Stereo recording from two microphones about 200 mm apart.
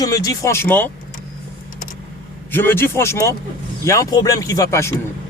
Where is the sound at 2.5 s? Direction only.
10° left (ahead or behind).